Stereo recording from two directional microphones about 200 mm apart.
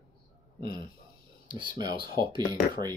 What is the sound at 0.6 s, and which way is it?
Speech, 20° right (ahead or behind).